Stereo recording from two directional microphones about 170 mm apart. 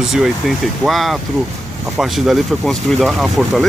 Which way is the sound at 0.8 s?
Centre (ahead or behind).